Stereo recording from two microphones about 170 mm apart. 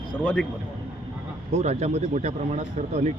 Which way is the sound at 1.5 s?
40° right (ahead or behind).